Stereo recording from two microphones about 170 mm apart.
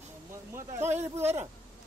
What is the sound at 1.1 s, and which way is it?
Speech, 15° right (ahead or behind).